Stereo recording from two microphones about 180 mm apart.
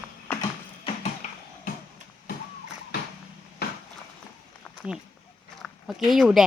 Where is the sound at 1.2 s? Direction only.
40° left (ahead or behind).